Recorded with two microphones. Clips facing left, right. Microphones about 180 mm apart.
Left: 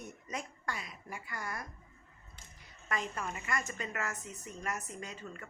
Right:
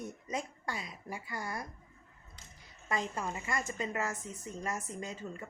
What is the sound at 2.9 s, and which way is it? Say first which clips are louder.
A woman's voice: right 2 dB; 25° right (ahead or behind).